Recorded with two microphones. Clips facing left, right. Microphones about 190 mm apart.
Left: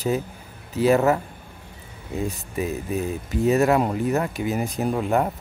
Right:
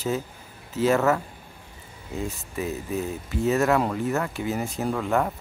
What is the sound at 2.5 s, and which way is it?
Speech, 15° left (ahead or behind).